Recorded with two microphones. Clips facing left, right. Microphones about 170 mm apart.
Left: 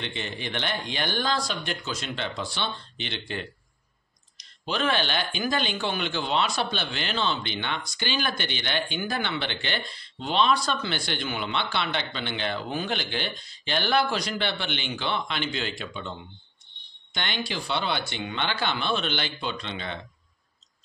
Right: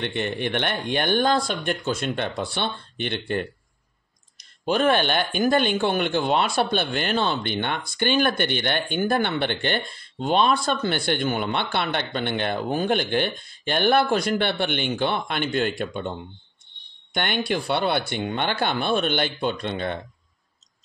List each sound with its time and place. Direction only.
0.0 s speech: 55° right (ahead or behind)
4.6 s speech: 50° right (ahead or behind)